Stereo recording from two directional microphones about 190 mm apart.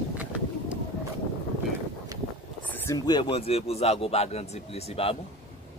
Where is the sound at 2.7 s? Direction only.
10° left (ahead or behind).